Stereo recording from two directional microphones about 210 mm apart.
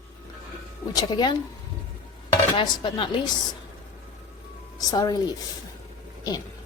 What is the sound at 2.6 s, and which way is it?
Speech, 25° left (ahead or behind).